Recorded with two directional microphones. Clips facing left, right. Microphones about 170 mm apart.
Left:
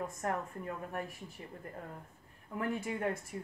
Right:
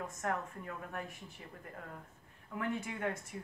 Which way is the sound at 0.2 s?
30° left (ahead or behind).